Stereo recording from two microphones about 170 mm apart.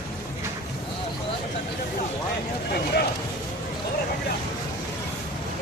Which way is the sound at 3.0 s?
70° left (ahead or behind).